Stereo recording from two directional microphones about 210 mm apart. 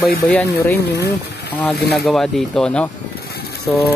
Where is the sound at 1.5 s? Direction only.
5° left (ahead or behind).